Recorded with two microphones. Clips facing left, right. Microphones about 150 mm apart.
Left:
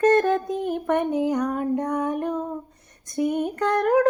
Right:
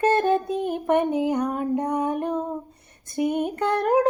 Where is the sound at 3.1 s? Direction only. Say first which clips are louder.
Even; 20° right (ahead or behind).